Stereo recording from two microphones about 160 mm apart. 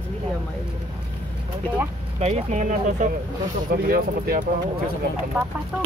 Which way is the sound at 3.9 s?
70° right (ahead or behind).